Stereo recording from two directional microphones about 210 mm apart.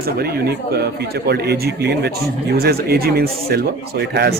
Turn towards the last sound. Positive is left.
turn(degrees=-50)  # may be behind; listen again after turning